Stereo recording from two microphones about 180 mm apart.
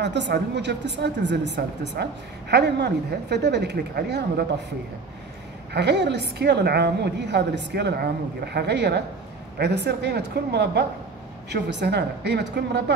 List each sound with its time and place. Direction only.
0.0 s a woman's voice: 70° right (ahead or behind)
5.7 s a woman's voice: 70° right (ahead or behind)